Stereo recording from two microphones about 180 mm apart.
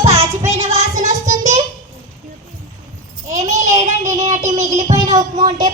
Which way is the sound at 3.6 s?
40° right (ahead or behind).